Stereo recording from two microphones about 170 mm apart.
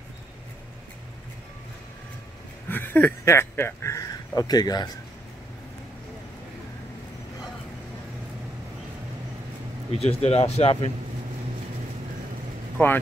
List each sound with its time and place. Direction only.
2.7 s speech: 10° left (ahead or behind)
9.9 s speech: 35° left (ahead or behind)
12.7 s speech: 10° left (ahead or behind)